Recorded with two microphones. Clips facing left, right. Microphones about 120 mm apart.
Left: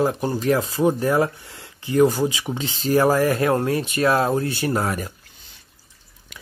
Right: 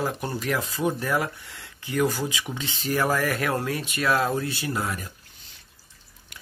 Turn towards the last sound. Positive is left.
turn(degrees=60)  # may be behind; listen again after turning